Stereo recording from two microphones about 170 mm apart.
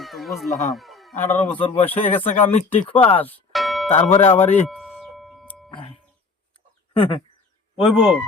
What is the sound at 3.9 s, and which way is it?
Speech, 40° left (ahead or behind).